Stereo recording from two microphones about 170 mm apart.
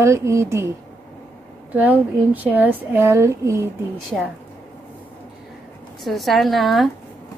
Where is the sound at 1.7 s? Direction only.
10° right (ahead or behind).